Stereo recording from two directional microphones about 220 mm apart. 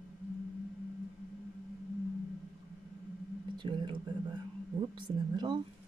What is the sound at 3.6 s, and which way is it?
Speech, 20° right (ahead or behind).